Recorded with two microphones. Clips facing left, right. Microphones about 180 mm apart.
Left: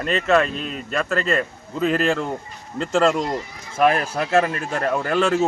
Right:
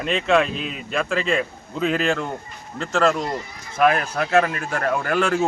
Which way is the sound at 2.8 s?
30° left (ahead or behind).